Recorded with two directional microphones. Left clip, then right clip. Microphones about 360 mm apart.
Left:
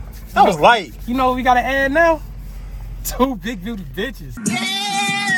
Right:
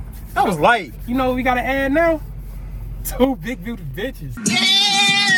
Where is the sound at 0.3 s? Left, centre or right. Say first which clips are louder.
Left 4 dB; centre.